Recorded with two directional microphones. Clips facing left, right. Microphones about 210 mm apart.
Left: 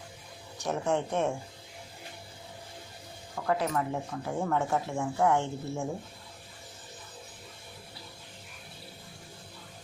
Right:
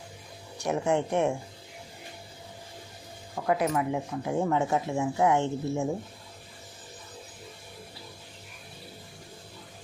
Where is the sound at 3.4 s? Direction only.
10° right (ahead or behind).